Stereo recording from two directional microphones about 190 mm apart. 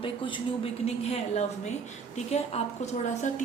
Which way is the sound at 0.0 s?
25° left (ahead or behind).